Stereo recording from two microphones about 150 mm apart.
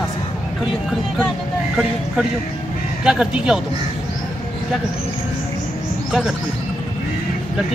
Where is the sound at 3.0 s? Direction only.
5° right (ahead or behind).